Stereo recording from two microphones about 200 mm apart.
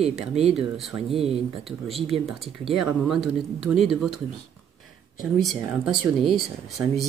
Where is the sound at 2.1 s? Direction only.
30° right (ahead or behind).